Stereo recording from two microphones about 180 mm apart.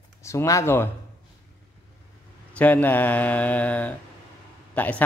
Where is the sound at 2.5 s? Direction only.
10° left (ahead or behind).